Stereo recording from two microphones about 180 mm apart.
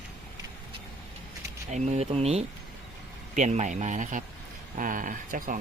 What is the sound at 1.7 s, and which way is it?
Speech, 40° right (ahead or behind).